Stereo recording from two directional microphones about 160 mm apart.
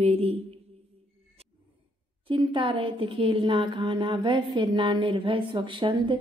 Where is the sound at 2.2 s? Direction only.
30° right (ahead or behind).